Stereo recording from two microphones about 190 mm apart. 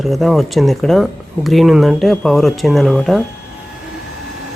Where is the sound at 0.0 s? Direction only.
Centre (ahead or behind).